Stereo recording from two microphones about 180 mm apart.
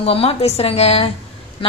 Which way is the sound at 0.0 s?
30° left (ahead or behind).